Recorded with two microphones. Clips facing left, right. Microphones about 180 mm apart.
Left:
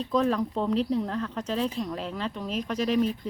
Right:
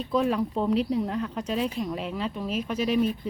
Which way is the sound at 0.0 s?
10° right (ahead or behind).